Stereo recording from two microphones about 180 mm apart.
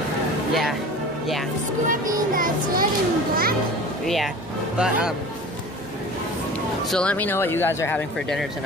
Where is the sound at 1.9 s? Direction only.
50° right (ahead or behind).